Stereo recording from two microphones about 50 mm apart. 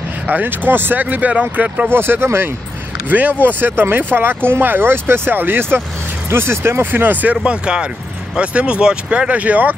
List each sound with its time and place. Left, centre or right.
0.3 s speech: right
1.0 s speech: right
1.9 s speech: right
3.1 s speech: right
7.4 s speech: centre